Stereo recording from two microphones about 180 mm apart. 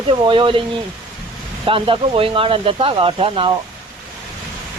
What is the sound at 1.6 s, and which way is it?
Speech, 30° right (ahead or behind).